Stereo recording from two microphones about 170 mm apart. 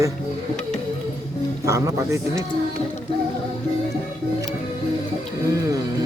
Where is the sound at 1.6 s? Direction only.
20° right (ahead or behind).